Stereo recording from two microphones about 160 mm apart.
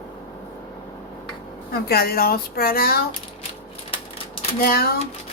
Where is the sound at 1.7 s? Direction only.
75° left (ahead or behind).